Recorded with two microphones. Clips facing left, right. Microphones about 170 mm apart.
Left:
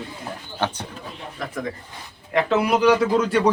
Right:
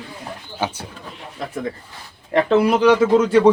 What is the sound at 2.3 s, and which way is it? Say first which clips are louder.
Speech: right 4 dB; 30° right (ahead or behind).